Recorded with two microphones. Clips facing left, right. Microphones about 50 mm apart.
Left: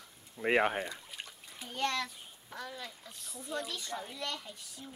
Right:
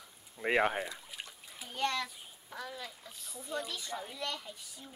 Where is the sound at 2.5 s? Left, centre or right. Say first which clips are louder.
Even; centre.